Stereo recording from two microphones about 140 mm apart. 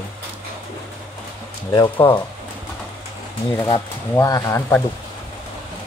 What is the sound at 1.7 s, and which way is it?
Speech, 30° left (ahead or behind).